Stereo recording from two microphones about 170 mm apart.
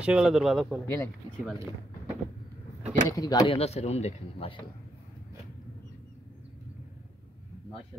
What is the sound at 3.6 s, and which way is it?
Speech, 40° left (ahead or behind).